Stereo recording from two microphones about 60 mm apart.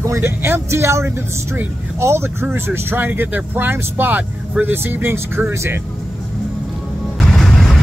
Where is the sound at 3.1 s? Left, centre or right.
Right.